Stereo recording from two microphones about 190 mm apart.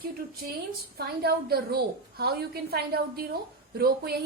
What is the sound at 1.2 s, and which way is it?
A woman's voice, 55° right (ahead or behind).